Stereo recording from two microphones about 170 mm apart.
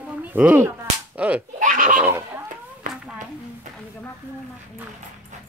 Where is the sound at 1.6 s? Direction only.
50° right (ahead or behind).